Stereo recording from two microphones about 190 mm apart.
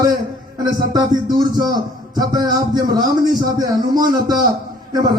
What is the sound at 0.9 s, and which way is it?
A man's voice, 20° right (ahead or behind).